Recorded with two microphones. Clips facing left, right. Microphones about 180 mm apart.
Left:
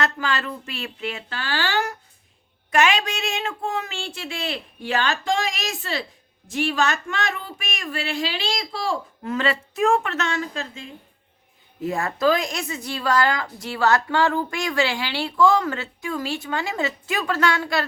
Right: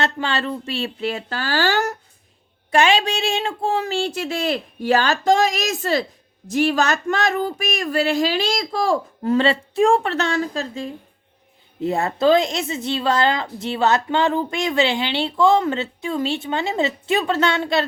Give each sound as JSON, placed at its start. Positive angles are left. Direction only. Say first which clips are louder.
{"t": 0.0, "sound": "a woman's voice", "louder": "right 2 dB", "side_deg": -30}
{"t": 2.6, "sound": "a woman's voice", "louder": "right 3 dB", "side_deg": -30}
{"t": 9.3, "sound": "a woman's voice", "louder": "right 6 dB", "side_deg": -30}
{"t": 11.8, "sound": "a woman's voice", "louder": "right 3 dB", "side_deg": -25}